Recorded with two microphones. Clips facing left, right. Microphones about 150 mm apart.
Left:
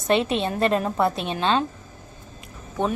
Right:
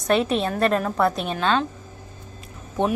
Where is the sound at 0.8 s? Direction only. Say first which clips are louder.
Right 1 dB; 25° left (ahead or behind).